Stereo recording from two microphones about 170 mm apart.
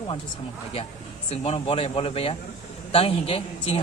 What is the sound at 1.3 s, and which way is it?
A man's voice, 35° left (ahead or behind).